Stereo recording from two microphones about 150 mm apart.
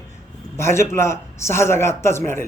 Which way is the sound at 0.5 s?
20° left (ahead or behind).